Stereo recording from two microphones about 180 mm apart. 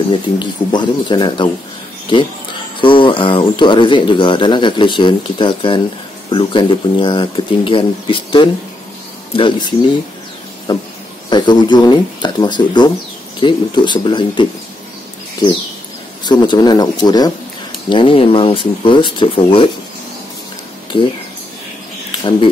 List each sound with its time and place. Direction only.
0.1 s speech: 25° left (ahead or behind)
2.8 s speech: 25° left (ahead or behind)
16.3 s speech: 25° left (ahead or behind)
20.9 s speech: 30° left (ahead or behind)